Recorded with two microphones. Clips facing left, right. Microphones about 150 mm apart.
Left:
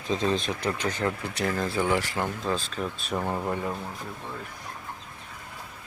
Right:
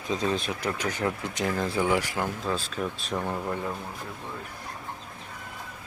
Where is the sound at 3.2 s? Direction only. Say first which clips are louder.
Left 2 dB; 15° left (ahead or behind).